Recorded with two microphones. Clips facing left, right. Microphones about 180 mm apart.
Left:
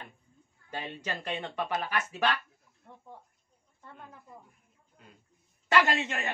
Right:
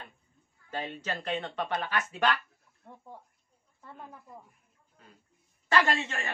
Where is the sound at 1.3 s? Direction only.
10° left (ahead or behind).